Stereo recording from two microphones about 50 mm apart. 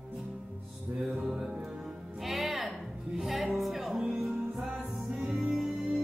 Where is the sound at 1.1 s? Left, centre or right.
Centre.